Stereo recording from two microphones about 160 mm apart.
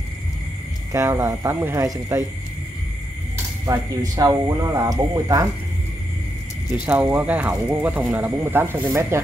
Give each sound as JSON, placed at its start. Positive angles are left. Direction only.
{"t": 0.9, "sound": "speech", "side_deg": -20}
{"t": 3.6, "sound": "speech", "side_deg": -20}
{"t": 6.9, "sound": "speech", "side_deg": -10}